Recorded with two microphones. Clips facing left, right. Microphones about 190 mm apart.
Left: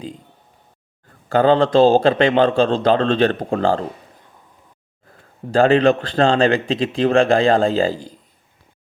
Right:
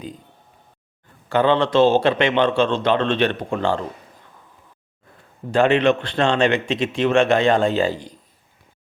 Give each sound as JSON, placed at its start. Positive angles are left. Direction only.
{"t": 1.3, "sound": "speech", "side_deg": 35}
{"t": 5.5, "sound": "speech", "side_deg": 35}